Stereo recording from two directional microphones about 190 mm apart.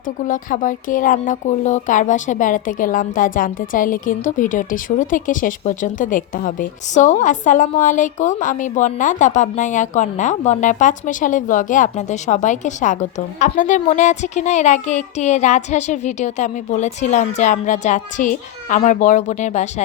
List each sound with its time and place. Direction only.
0.3 s speech: 45° left (ahead or behind)